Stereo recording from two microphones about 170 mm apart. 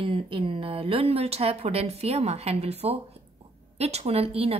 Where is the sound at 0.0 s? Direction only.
30° right (ahead or behind).